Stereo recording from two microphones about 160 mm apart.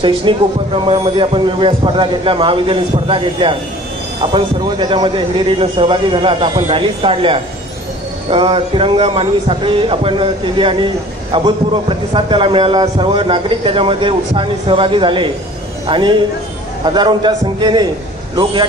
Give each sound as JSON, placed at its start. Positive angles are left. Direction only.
{"t": 0.0, "sound": "a man's voice", "side_deg": -30}